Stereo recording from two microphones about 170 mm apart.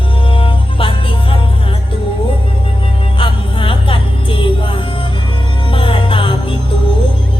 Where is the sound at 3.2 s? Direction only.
30° left (ahead or behind).